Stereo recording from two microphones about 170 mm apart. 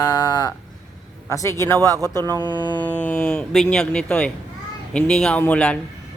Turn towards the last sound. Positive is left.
turn(degrees=5)  # may be behind; listen again after turning